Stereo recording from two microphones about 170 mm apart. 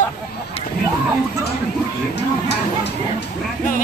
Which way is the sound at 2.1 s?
85° left.